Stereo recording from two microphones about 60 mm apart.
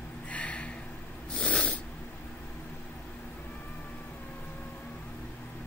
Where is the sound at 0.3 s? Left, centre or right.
Left.